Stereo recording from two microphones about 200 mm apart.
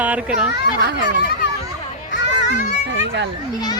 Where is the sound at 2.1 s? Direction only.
60° left (ahead or behind).